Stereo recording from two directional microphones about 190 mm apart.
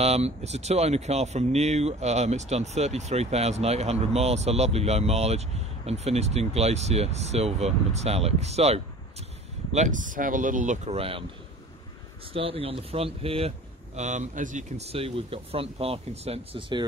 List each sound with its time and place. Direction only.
0.0 s speech: 35° right (ahead or behind)
12.3 s speech: 30° right (ahead or behind)